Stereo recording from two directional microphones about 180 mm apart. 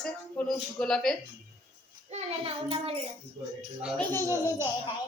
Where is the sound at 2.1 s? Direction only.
35° right (ahead or behind).